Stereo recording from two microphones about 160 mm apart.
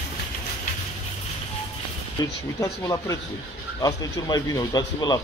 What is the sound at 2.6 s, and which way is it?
A man's voice, 20° left (ahead or behind).